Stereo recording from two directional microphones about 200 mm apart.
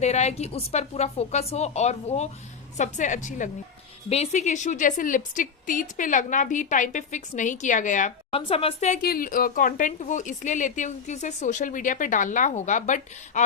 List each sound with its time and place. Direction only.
0.0 s speech: 35° left (ahead or behind)
8.4 s speech: 30° left (ahead or behind)